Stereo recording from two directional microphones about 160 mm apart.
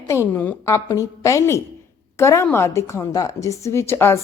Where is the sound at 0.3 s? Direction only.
15° left (ahead or behind).